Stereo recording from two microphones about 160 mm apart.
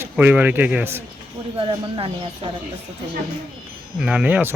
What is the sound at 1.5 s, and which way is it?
Speech, 35° right (ahead or behind).